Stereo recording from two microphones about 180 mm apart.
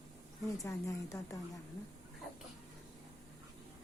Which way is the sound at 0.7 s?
15° left (ahead or behind).